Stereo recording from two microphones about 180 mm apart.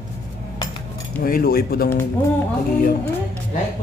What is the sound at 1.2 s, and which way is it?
Speech, 55° left (ahead or behind).